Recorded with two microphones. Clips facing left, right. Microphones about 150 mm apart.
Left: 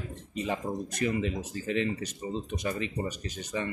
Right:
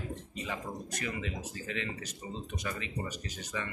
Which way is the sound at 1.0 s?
25° left (ahead or behind).